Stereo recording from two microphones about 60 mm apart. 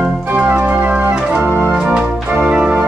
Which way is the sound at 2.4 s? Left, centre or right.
Centre.